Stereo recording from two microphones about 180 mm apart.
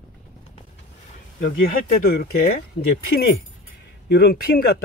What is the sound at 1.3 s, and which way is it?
Speech, 50° left (ahead or behind).